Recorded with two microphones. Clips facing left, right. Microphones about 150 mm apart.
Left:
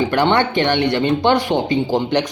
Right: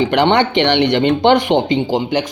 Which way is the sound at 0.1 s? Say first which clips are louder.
Right 3 dB; 20° right (ahead or behind).